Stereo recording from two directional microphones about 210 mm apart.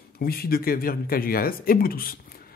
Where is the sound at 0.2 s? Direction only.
45° left (ahead or behind).